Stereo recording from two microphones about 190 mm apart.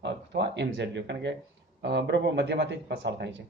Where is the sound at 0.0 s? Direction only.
65° right (ahead or behind).